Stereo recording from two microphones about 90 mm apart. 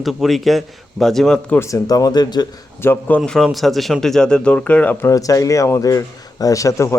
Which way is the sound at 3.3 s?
Centre (ahead or behind).